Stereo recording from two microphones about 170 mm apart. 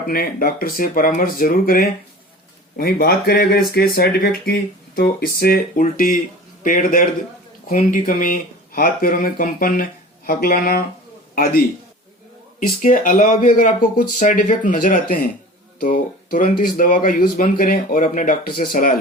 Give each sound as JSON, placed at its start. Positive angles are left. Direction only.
{"t": 0.1, "sound": "speech", "side_deg": 60}
{"t": 12.8, "sound": "speech", "side_deg": 50}